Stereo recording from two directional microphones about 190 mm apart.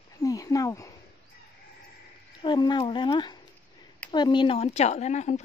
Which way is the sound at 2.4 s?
25° left (ahead or behind).